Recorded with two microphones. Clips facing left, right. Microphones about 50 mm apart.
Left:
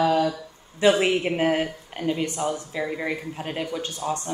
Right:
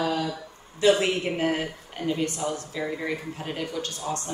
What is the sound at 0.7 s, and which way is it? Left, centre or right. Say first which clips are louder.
Speech: left 2 dB; left.